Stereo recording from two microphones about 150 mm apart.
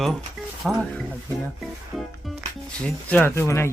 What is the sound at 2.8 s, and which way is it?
Speech, 10° left (ahead or behind).